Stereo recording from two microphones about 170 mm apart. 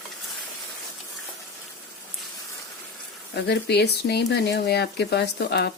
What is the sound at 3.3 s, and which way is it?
Speech, 75° left (ahead or behind).